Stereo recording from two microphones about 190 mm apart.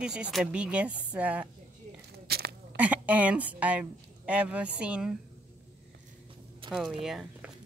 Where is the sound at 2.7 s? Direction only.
10° right (ahead or behind).